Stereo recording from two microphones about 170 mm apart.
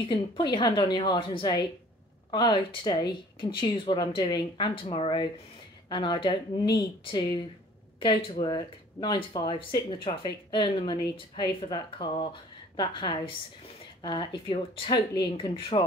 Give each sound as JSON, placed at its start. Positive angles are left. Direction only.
{"t": 0.1, "sound": "speech", "side_deg": 25}